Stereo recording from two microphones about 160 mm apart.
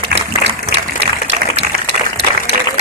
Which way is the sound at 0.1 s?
90° right.